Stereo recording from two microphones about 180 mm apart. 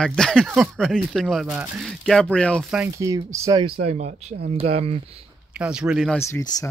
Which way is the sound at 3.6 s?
35° right (ahead or behind).